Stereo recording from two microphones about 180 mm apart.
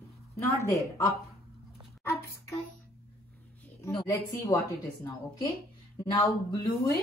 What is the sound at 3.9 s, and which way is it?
Speech, 20° left (ahead or behind).